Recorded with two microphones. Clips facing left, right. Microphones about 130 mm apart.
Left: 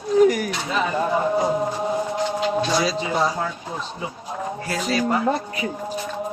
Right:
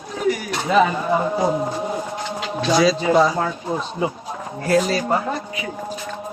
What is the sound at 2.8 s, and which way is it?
Speech, 90° right.